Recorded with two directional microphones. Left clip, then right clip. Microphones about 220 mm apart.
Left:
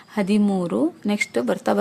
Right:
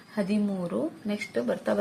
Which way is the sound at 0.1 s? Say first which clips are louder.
Left 8 dB; 45° left (ahead or behind).